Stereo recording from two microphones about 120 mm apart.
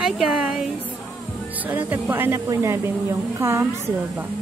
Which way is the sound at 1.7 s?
15° right (ahead or behind).